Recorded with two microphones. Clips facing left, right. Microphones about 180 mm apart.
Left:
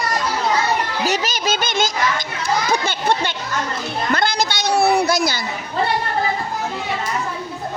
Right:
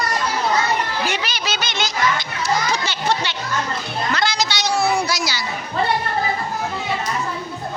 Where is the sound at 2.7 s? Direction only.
55° left (ahead or behind).